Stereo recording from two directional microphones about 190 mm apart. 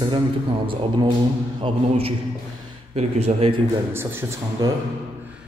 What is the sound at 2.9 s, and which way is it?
Speech, 35° right (ahead or behind).